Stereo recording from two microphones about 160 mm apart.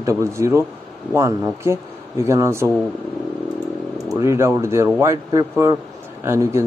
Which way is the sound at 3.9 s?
20° right (ahead or behind).